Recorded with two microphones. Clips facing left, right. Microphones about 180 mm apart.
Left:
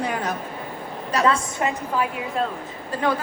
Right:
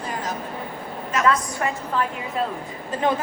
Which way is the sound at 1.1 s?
30° left (ahead or behind).